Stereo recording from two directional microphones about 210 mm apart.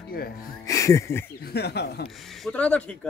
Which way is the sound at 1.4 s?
50° left (ahead or behind).